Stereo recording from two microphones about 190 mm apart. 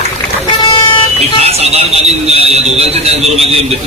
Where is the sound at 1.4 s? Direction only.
35° right (ahead or behind).